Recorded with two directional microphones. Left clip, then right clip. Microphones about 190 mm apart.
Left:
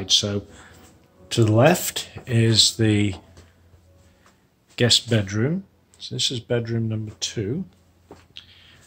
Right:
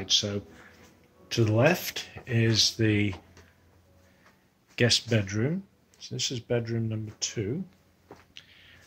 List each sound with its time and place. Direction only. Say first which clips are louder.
0.0 s speech: left 6 dB; 15° left (ahead or behind)
4.7 s speech: left 6 dB; 5° right (ahead or behind)
8.4 s a sound: left 8 dB; 5° left (ahead or behind)